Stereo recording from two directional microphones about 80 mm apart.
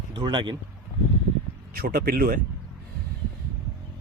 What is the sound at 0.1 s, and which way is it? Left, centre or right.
Speech, right.